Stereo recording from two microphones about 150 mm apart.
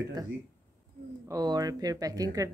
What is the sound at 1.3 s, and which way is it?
Speech, 25° right (ahead or behind).